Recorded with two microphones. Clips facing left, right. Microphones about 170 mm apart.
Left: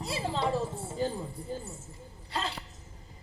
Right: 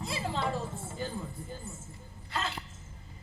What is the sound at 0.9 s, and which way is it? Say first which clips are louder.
Music: left 6 dB; 35° left (ahead or behind).